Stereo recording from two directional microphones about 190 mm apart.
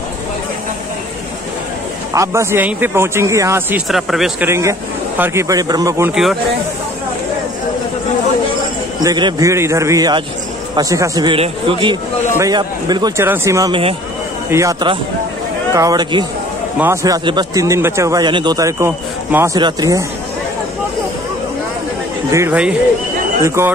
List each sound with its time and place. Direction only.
2.1 s speech: 15° right (ahead or behind)
3.9 s speech: centre (ahead or behind)
4.5 s speech: 15° right (ahead or behind)
9.0 s a man's voice: 20° right (ahead or behind)
16.7 s speech: 10° right (ahead or behind)
22.3 s speech: 10° right (ahead or behind)